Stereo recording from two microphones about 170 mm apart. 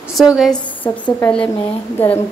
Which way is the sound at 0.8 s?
10° left (ahead or behind).